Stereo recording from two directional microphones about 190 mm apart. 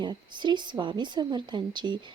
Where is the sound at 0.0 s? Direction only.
25° right (ahead or behind).